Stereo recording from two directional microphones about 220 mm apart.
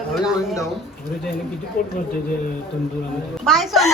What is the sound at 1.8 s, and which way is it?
Speech, 40° left (ahead or behind).